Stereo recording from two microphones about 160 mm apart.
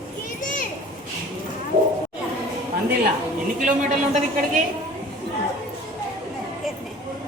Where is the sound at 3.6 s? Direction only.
50° right (ahead or behind).